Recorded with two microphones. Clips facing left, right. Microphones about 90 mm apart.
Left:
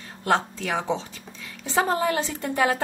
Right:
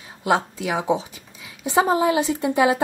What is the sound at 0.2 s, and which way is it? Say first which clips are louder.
A woman's voice: right 2 dB; 10° right (ahead or behind).